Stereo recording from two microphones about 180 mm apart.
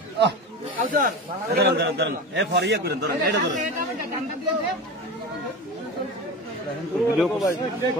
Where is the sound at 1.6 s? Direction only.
65° right (ahead or behind).